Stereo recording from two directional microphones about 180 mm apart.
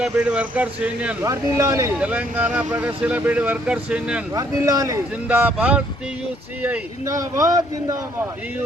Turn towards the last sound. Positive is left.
turn(degrees=-20)  # may be behind; listen again after turning